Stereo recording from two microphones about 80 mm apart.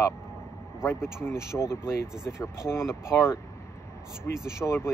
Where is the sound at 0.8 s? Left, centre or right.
Left.